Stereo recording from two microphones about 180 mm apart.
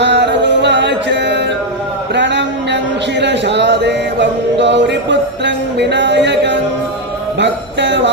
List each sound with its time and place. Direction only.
0.0 s music: 75° right (ahead or behind)
2.1 s a sound: 75° right (ahead or behind)
3.2 s music: 75° right (ahead or behind)